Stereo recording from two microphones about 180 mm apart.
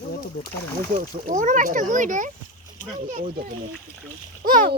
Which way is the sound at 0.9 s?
45° right (ahead or behind).